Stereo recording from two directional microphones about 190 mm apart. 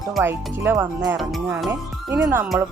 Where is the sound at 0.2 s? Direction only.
10° right (ahead or behind).